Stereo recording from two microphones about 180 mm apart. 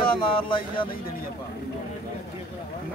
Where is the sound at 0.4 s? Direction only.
25° left (ahead or behind).